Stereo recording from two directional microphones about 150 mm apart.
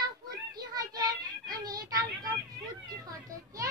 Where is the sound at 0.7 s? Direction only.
25° right (ahead or behind).